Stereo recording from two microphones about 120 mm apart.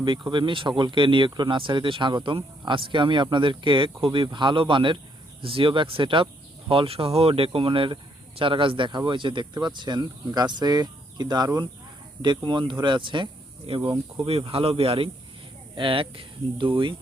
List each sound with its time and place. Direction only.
0.3 s speech: 40° right (ahead or behind)
14.3 s speech: 55° right (ahead or behind)